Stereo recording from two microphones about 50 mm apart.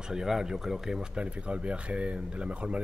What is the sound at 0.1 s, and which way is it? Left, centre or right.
Speech, centre.